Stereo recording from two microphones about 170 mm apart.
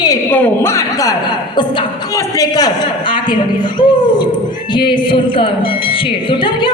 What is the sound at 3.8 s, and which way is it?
A woman's voice, 25° left (ahead or behind).